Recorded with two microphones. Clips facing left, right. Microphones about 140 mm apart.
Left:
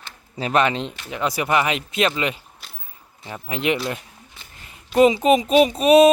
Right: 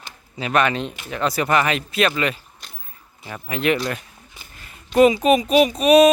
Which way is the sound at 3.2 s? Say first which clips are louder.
Right 2 dB; 25° left (ahead or behind).